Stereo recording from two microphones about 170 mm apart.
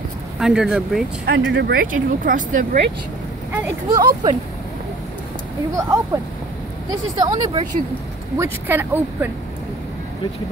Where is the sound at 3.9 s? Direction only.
25° right (ahead or behind).